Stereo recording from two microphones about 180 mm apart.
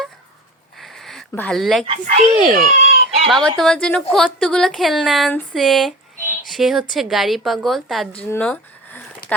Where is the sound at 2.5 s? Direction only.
50° right (ahead or behind).